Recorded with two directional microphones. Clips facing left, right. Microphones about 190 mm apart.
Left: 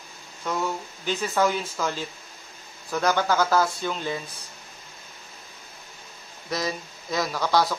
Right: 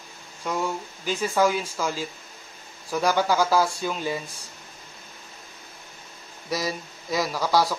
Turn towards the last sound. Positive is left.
turn(degrees=-10)  # may be behind; listen again after turning